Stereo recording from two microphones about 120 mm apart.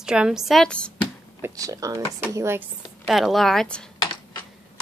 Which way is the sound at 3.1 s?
Centre (ahead or behind).